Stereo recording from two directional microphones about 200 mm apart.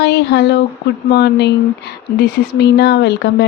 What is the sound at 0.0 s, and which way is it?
Speech, 60° left (ahead or behind).